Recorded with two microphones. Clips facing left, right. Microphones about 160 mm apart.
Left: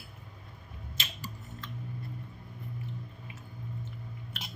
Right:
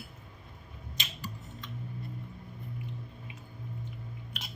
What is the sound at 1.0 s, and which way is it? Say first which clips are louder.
Squish: even; 20° right (ahead or behind).